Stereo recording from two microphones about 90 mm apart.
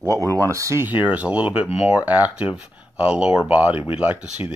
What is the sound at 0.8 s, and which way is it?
Speech, 15° right (ahead or behind).